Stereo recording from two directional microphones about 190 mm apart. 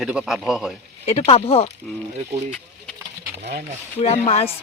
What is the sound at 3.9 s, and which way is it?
Speech, 35° left (ahead or behind).